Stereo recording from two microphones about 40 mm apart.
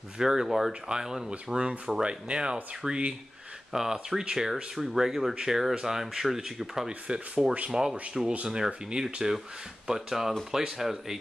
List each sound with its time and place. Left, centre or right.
0.2 s speech: centre
3.7 s speech: centre
4.2 s speech: right
4.7 s speech: centre
6.9 s speech: right
7.7 s speech: centre